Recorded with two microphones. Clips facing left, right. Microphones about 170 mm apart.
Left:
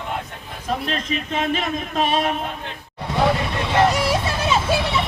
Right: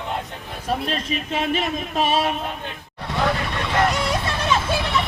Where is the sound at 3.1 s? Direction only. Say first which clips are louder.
Left 3 dB; 15° left (ahead or behind).